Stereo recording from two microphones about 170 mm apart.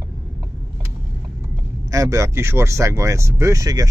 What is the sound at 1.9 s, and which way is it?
Speech, 20° right (ahead or behind).